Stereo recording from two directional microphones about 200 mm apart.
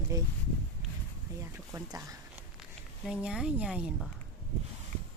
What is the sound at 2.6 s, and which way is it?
Speech, 5° right (ahead or behind).